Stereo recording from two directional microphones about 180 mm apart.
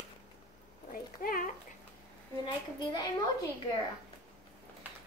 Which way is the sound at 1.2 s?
50° left (ahead or behind).